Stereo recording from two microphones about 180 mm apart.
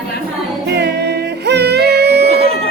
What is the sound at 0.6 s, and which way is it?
Yodeling, 65° right (ahead or behind).